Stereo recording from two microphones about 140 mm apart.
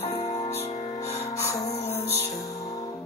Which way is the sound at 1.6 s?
50° left (ahead or behind).